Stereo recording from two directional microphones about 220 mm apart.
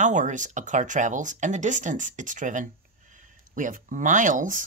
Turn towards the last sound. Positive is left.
turn(degrees=-35)  # may be behind; listen again after turning